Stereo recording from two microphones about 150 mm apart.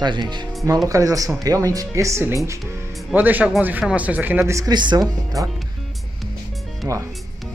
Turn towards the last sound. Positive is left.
turn(degrees=-25)  # may be behind; listen again after turning